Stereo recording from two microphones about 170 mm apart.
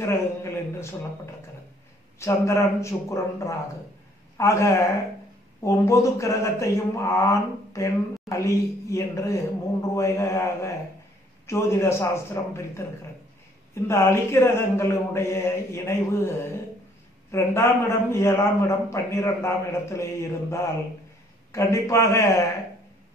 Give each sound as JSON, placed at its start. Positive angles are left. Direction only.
{"t": 0.0, "sound": "speech", "side_deg": 15}
{"t": 13.8, "sound": "speech", "side_deg": 15}